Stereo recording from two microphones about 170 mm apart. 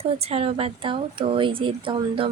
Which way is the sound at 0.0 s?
35° right (ahead or behind).